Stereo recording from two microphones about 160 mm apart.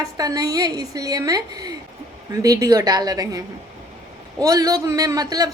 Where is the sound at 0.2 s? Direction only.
20° right (ahead or behind).